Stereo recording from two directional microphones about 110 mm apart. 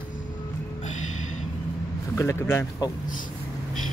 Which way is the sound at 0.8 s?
90° left.